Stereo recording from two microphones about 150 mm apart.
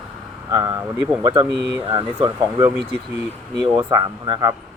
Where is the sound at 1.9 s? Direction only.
30° right (ahead or behind).